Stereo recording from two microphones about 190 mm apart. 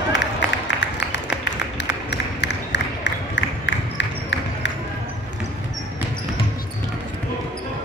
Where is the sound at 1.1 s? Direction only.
65° left (ahead or behind).